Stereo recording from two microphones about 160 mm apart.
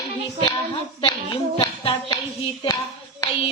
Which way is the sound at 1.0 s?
30° left (ahead or behind).